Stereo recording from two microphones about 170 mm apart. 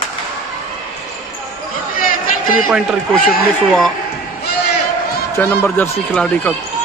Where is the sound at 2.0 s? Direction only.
55° left (ahead or behind).